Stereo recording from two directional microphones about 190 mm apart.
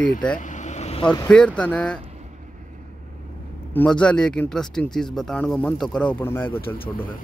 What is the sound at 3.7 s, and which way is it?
Speech, 5° left (ahead or behind).